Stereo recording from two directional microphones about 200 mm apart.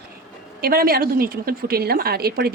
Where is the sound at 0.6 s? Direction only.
50° right (ahead or behind).